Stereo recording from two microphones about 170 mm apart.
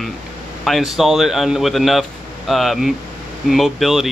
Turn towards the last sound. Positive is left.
turn(degrees=0)  # may be behind; listen again after turning